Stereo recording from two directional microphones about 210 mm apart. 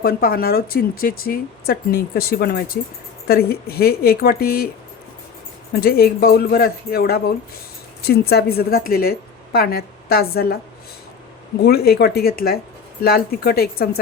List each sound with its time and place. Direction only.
0.0 s speech: 45° left (ahead or behind)
5.7 s speech: 45° left (ahead or behind)
11.6 s speech: 50° left (ahead or behind)